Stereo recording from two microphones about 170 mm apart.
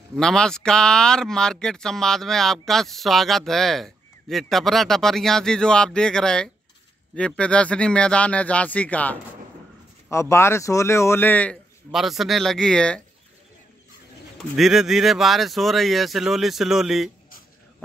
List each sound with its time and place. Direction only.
0.2 s speech: 5° left (ahead or behind)
11.9 s speech: centre (ahead or behind)
14.6 s speech: centre (ahead or behind)